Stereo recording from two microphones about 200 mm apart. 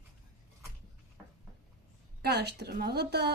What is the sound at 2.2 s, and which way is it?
Speech, 55° right (ahead or behind).